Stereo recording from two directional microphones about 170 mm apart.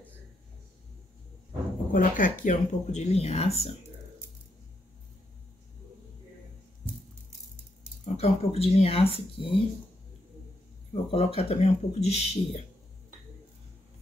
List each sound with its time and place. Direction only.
1.9 s speech: 50° left (ahead or behind)
8.0 s speech: 35° left (ahead or behind)
11.1 s speech: 35° left (ahead or behind)